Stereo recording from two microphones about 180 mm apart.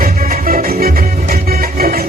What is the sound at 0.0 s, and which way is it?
Music, 50° right (ahead or behind).